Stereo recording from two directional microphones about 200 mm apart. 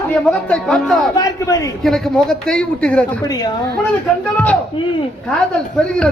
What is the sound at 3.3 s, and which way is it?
Speech, 20° left (ahead or behind).